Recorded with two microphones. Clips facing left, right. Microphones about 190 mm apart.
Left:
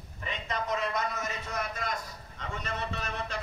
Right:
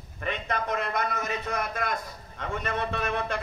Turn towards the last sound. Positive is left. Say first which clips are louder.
# right 7 dB
turn(degrees=-55)  # may be behind; listen again after turning